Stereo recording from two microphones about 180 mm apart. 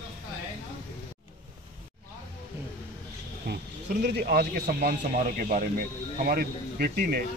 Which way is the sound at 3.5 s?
65° right (ahead or behind).